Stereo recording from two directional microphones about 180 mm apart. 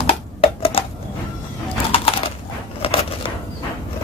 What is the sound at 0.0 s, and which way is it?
Typewriter, 30° left (ahead or behind).